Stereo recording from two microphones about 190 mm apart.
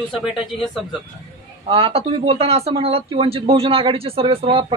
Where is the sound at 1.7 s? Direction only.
30° right (ahead or behind).